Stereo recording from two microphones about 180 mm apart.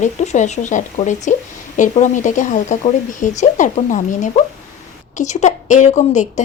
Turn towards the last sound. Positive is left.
turn(degrees=40)  # may be behind; listen again after turning